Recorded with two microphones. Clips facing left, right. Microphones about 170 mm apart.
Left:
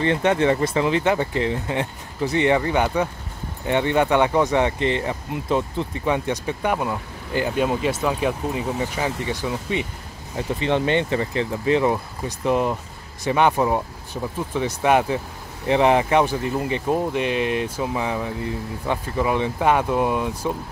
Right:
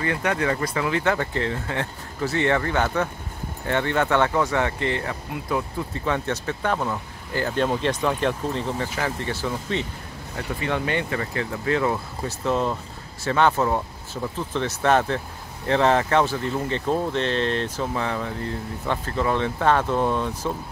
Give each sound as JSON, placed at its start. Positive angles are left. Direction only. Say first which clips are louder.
{"t": 0.0, "sound": "speech", "louder": "left 5 dB", "side_deg": 25}